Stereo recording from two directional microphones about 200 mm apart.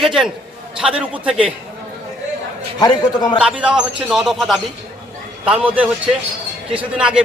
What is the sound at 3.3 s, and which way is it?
A man's voice, 5° right (ahead or behind).